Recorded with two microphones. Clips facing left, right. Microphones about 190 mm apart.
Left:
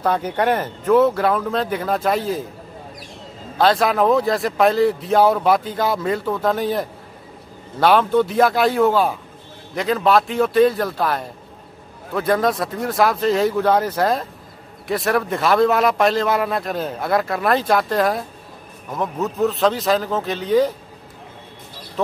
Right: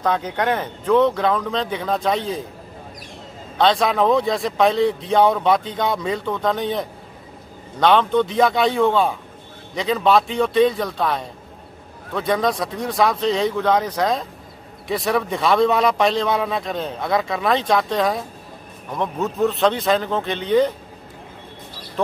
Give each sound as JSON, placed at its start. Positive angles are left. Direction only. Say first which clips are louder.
{"t": 0.0, "sound": "speech", "louder": "left 2 dB", "side_deg": 10}
{"t": 3.5, "sound": "a man's voice", "louder": "left 1 dB", "side_deg": 5}